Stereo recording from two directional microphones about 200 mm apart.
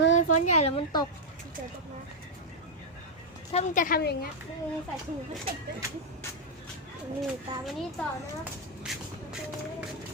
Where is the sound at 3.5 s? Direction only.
40° left (ahead or behind).